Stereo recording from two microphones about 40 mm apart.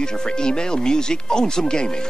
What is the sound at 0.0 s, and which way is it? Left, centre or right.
Speech, centre.